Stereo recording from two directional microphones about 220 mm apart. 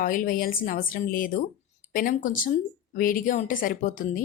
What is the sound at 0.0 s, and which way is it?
A woman's voice, 40° left (ahead or behind).